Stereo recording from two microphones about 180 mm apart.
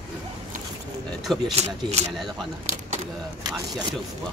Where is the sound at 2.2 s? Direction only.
Centre (ahead or behind).